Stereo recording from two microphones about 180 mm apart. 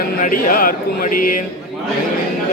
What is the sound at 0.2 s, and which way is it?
Speech, 50° left (ahead or behind).